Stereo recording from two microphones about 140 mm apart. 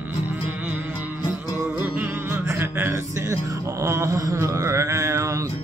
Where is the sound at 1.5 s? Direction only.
15° right (ahead or behind).